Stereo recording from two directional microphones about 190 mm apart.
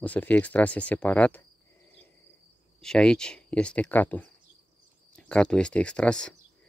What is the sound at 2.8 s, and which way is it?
Speech, 5° left (ahead or behind).